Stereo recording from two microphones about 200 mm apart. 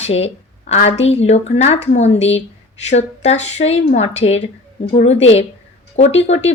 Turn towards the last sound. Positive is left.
turn(degrees=30)  # may be behind; listen again after turning